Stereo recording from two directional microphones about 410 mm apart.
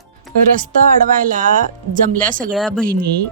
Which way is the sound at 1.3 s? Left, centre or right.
Centre.